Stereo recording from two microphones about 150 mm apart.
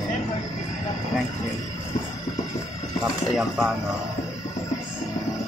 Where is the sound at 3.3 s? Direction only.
Centre (ahead or behind).